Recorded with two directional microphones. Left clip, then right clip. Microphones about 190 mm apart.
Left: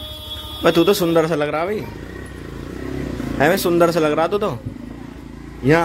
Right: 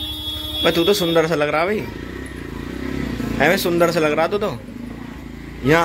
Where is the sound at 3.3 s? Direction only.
25° left (ahead or behind).